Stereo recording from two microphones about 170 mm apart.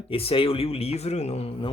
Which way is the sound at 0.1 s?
35° left (ahead or behind).